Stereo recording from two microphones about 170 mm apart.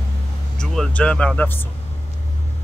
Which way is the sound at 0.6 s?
5° left (ahead or behind).